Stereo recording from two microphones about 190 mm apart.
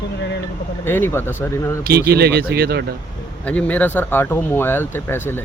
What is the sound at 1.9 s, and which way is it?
Speech, 55° right (ahead or behind).